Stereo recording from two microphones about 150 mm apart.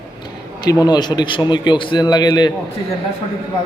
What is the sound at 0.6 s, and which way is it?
Speech, 25° left (ahead or behind).